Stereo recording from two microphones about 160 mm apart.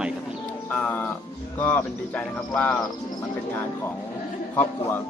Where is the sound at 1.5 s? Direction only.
10° left (ahead or behind).